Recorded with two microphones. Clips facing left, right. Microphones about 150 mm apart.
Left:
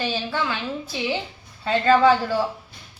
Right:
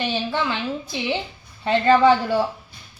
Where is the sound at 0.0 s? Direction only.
20° right (ahead or behind).